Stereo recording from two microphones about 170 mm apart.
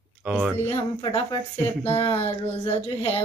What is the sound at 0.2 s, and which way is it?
Speech, 5° right (ahead or behind).